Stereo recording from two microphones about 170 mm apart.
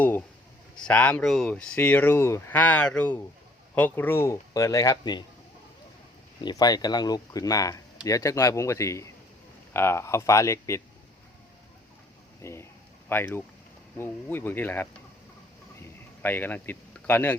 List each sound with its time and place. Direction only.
0.0 s speech: 10° left (ahead or behind)
6.4 s speech: 20° left (ahead or behind)
12.4 s speech: 15° left (ahead or behind)
15.8 s a sound: 10° left (ahead or behind)